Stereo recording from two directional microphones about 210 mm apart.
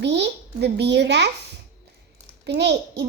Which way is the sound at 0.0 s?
55° right (ahead or behind).